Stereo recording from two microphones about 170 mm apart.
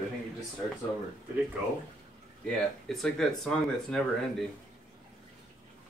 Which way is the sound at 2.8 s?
Centre (ahead or behind).